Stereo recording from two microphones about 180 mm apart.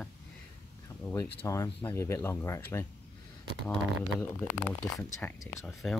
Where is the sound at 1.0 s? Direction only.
15° left (ahead or behind).